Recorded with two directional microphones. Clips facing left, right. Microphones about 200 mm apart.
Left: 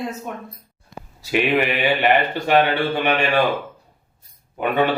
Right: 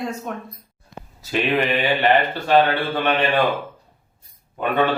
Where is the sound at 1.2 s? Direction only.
10° left (ahead or behind).